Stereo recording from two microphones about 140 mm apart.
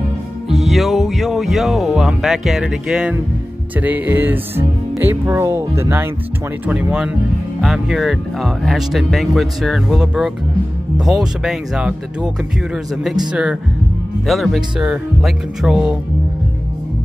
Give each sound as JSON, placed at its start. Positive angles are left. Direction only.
{"t": 0.5, "sound": "speech", "side_deg": 0}